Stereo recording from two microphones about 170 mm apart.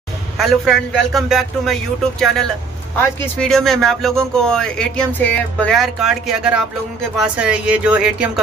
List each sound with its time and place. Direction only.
0.4 s speech: centre (ahead or behind)
6.0 s speech: 5° right (ahead or behind)